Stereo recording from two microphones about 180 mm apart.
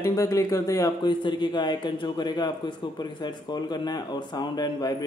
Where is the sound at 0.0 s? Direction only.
15° left (ahead or behind).